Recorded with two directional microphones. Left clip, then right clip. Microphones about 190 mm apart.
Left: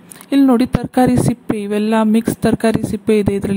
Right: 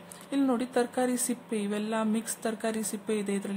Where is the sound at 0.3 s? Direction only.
40° left (ahead or behind).